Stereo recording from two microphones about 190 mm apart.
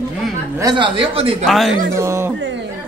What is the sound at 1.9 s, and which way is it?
Speech, 15° right (ahead or behind).